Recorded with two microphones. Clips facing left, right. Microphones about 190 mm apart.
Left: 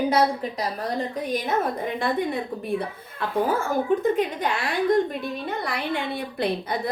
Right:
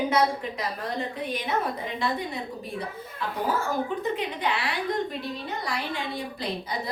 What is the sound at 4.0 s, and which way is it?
Speech, 45° left (ahead or behind).